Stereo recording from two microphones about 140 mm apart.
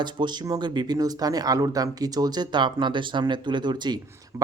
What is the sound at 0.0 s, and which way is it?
A man's voice, 30° right (ahead or behind).